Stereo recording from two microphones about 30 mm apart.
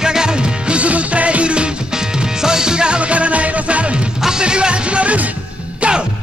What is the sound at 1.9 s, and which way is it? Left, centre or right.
Music, right.